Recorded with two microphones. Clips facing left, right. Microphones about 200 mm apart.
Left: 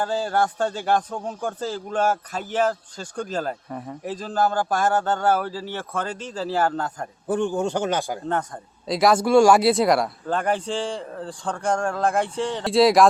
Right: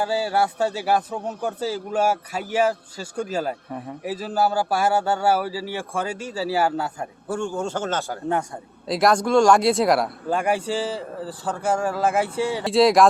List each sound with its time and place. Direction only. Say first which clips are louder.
0.0 s a man's voice: right 1 dB; 10° right (ahead or behind)
7.3 s a man's voice: left 4 dB; 15° left (ahead or behind)
8.9 s speech: left 1 dB; centre (ahead or behind)